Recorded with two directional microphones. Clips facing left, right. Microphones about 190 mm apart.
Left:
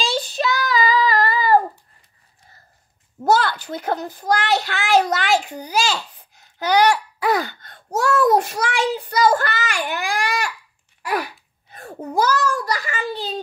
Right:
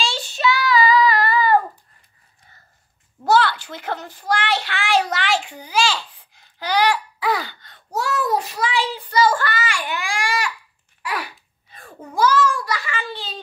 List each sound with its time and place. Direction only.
0.0 s child singing: 40° left (ahead or behind)
3.3 s a child's voice: 45° left (ahead or behind)
11.0 s a sound: 40° left (ahead or behind)